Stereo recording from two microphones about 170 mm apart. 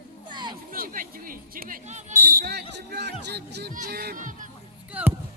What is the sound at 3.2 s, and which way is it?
Chatter, 75° right (ahead or behind).